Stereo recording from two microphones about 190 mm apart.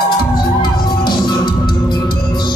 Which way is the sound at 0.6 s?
25° left (ahead or behind).